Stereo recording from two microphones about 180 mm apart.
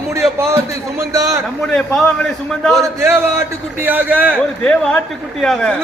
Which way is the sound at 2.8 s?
15° right (ahead or behind).